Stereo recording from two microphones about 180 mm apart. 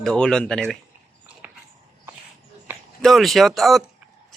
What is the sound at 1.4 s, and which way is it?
Walk, 10° right (ahead or behind).